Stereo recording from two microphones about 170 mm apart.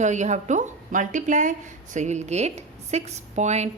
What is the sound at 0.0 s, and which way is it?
A woman's voice, 45° right (ahead or behind).